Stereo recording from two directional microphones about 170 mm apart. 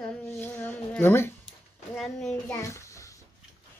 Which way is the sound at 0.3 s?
15° left (ahead or behind).